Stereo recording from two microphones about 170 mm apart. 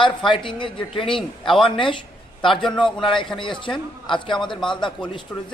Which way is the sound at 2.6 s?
Centre (ahead or behind).